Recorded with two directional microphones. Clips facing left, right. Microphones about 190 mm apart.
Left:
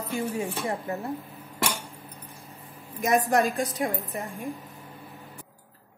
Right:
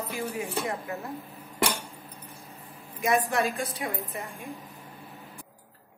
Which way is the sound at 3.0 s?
40° left (ahead or behind).